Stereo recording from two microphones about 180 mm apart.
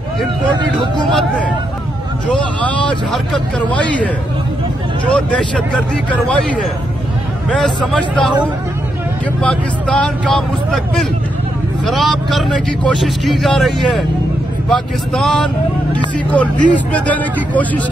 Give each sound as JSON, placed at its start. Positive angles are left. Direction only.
{"t": 0.6, "sound": "speech", "side_deg": -25}
{"t": 2.3, "sound": "speech", "side_deg": 5}
{"t": 5.1, "sound": "speech", "side_deg": 5}
{"t": 9.4, "sound": "speech", "side_deg": 5}